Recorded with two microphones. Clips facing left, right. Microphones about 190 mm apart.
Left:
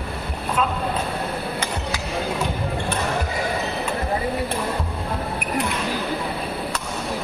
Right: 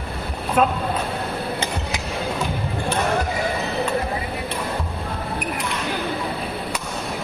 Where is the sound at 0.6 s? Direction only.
55° right (ahead or behind).